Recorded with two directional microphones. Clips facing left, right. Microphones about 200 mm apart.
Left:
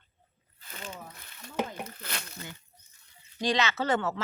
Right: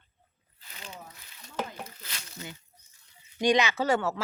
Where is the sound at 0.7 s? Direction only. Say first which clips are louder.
Left 3 dB; 50° left (ahead or behind).